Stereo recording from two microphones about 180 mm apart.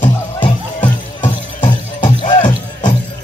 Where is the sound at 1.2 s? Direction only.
25° left (ahead or behind).